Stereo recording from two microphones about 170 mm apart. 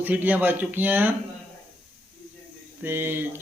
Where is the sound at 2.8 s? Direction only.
10° right (ahead or behind).